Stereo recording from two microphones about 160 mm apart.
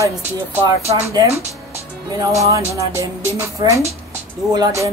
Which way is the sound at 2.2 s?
20° right (ahead or behind).